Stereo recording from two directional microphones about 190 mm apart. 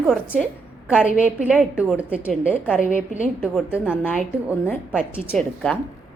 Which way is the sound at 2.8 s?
45° left (ahead or behind).